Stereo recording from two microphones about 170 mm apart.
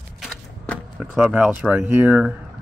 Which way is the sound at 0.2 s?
Centre (ahead or behind).